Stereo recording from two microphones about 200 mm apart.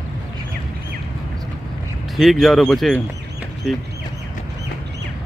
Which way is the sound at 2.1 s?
Centre (ahead or behind).